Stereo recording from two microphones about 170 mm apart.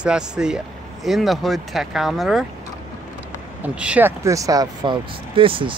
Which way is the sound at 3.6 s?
10° right (ahead or behind).